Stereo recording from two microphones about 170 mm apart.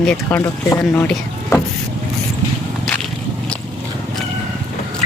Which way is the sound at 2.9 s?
Centre (ahead or behind).